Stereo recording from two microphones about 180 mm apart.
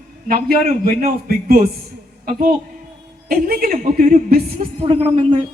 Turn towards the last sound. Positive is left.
turn(degrees=-30)  # may be behind; listen again after turning